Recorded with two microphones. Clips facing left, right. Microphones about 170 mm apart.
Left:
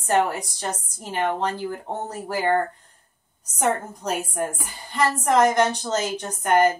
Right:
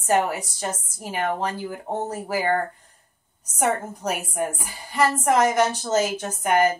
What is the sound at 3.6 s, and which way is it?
A woman's voice, 10° right (ahead or behind).